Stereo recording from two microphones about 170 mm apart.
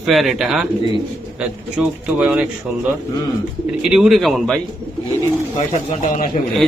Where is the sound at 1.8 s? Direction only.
5° right (ahead or behind).